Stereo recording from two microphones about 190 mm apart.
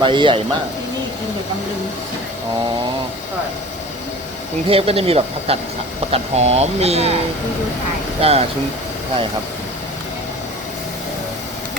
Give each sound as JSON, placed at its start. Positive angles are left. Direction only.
{"t": 0.0, "sound": "speech", "side_deg": -25}
{"t": 4.7, "sound": "speech", "side_deg": -30}
{"t": 8.2, "sound": "speech", "side_deg": -30}